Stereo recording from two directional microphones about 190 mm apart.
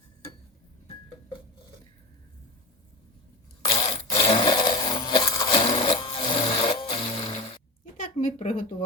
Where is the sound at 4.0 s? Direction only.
30° left (ahead or behind).